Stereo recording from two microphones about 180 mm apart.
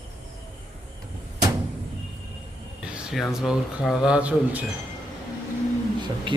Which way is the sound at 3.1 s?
Centre (ahead or behind).